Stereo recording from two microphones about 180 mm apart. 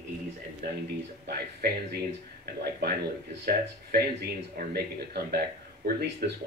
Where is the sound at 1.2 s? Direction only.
60° right (ahead or behind).